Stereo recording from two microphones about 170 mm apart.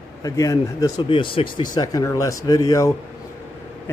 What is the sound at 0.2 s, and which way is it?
Speech, 20° left (ahead or behind).